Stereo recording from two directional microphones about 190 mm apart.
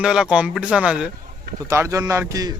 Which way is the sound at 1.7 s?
15° right (ahead or behind).